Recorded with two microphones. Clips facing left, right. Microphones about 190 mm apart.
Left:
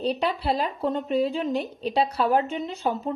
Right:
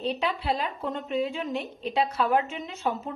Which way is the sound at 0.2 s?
Centre (ahead or behind).